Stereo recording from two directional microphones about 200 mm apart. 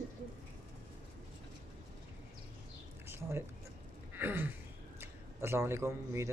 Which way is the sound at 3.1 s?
10° right (ahead or behind).